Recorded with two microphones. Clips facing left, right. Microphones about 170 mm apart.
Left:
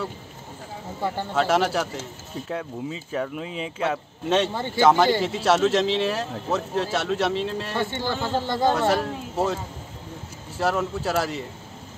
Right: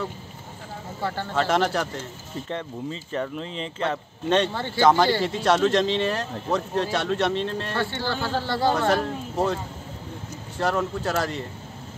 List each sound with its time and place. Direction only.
1.0 s speech: 15° left (ahead or behind)
1.3 s speech: 5° left (ahead or behind)
7.8 s speech: 15° left (ahead or behind)
8.8 s speech: 5° left (ahead or behind)
10.6 s speech: 5° left (ahead or behind)